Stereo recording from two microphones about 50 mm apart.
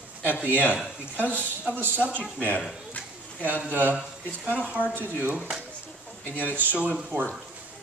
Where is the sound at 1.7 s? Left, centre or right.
Right.